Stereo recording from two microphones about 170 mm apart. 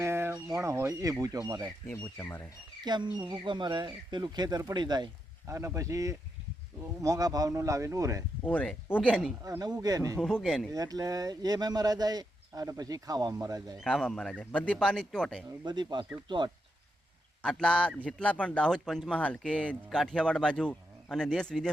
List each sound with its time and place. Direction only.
0.0 s a sound: 15° right (ahead or behind)
0.4 s speech: 20° right (ahead or behind)
1.9 s speech: 15° left (ahead or behind)
2.8 s speech: 25° right (ahead or behind)
8.4 s speech: 10° left (ahead or behind)
9.4 s speech: 20° right (ahead or behind)
10.2 s a man's voice: 5° left (ahead or behind)
10.7 s speech: 20° right (ahead or behind)
13.8 s a man's voice: 5° left (ahead or behind)
15.4 s speech: 25° right (ahead or behind)
17.4 s a man's voice: 5° left (ahead or behind)